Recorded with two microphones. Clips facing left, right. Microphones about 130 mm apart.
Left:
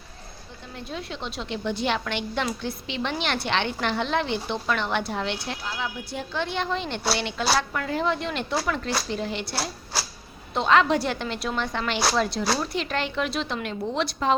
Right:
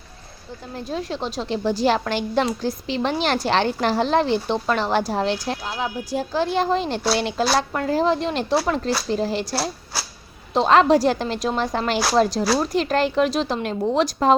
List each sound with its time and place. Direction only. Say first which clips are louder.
0.9 s a woman's voice: right 7 dB; 35° right (ahead or behind)